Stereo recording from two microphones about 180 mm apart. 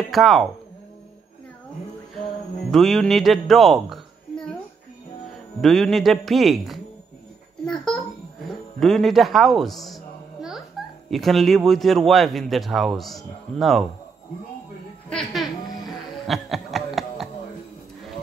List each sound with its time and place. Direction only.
0.0 s speech: centre (ahead or behind)
2.7 s a woman's voice: centre (ahead or behind)
5.6 s a man's voice: centre (ahead or behind)
7.6 s a sound: centre (ahead or behind)
8.7 s a man's voice: centre (ahead or behind)
11.1 s a man's voice: centre (ahead or behind)
15.0 s a man's voice: 5° left (ahead or behind)
15.7 s music: 20° left (ahead or behind)
16.3 s a sound: centre (ahead or behind)